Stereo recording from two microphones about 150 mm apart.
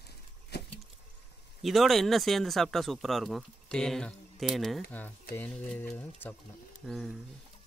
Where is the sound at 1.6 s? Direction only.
Centre (ahead or behind).